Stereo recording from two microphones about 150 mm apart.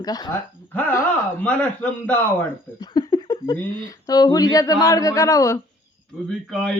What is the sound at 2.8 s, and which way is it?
Speech, 25° left (ahead or behind).